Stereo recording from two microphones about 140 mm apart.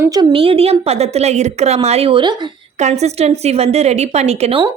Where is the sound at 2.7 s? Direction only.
55° right (ahead or behind).